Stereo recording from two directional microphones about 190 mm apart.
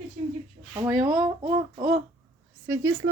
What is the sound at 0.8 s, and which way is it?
Speech, 20° right (ahead or behind).